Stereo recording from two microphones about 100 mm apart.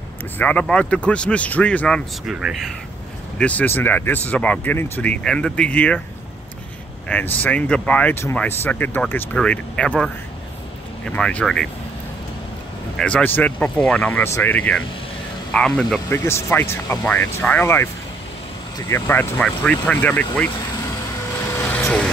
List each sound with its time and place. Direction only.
0.4 s speech: 15° left (ahead or behind)
2.2 s speech: centre (ahead or behind)
3.3 s speech: 15° left (ahead or behind)
7.1 s speech: 15° left (ahead or behind)
12.9 s speech: 10° left (ahead or behind)
13.7 s speech: 5° left (ahead or behind)
14.2 s speech: 20° left (ahead or behind); by 16.0 s 5° left (ahead or behind)
16.1 s speech: 25° left (ahead or behind)
18.9 s speech: 25° left (ahead or behind)
19.4 s speech: 10° left (ahead or behind)
21.5 s vehicle: 20° left (ahead or behind)